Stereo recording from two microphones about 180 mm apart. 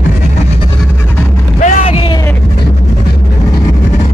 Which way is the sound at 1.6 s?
30° left (ahead or behind).